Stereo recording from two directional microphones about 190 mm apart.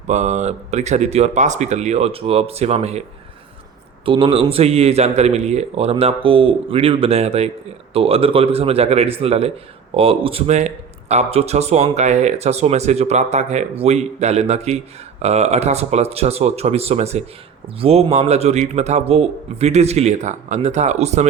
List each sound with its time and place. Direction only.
0.1 s speech: 35° right (ahead or behind)
4.0 s speech: 25° right (ahead or behind)